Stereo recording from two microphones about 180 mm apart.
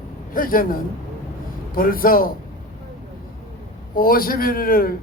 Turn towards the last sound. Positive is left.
turn(degrees=55)  # may be behind; listen again after turning